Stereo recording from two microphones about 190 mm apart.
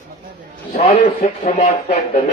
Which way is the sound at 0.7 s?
40° left (ahead or behind).